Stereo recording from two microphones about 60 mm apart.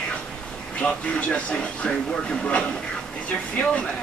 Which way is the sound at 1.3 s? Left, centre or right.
Centre.